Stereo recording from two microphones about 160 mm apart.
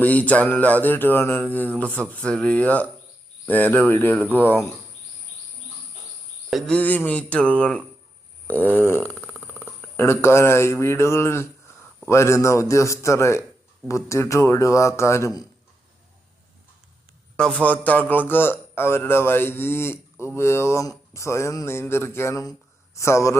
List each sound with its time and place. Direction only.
0.0 s a man's voice: 10° left (ahead or behind)
6.5 s a man's voice: 5° left (ahead or behind)
8.4 s a sound: 10° left (ahead or behind)
9.6 s a man's voice: 15° left (ahead or behind)
17.3 s a man's voice: 5° left (ahead or behind)